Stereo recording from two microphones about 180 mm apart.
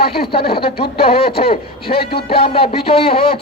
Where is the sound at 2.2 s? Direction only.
30° left (ahead or behind).